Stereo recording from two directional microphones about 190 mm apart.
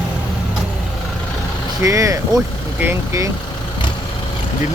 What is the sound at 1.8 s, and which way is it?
Vehicle, 15° right (ahead or behind).